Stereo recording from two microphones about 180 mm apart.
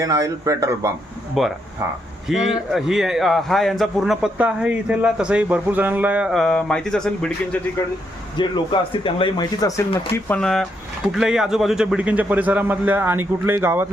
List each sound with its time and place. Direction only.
0.0 s a man's voice: 20° right (ahead or behind)
1.4 s a man's voice: centre (ahead or behind)
1.8 s a man's voice: 20° right (ahead or behind)
2.2 s a man's voice: 5° right (ahead or behind)
8.4 s speech: 25° left (ahead or behind)
10.2 s a man's voice: 5° left (ahead or behind); by 13.8 s 10° right (ahead or behind)